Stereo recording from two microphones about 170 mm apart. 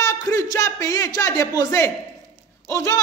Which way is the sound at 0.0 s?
20° left (ahead or behind).